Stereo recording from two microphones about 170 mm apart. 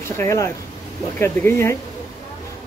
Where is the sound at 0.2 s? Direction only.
15° left (ahead or behind).